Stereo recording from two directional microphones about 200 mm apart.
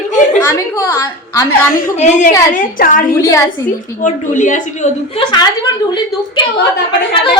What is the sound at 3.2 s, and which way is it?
Speech, 15° left (ahead or behind).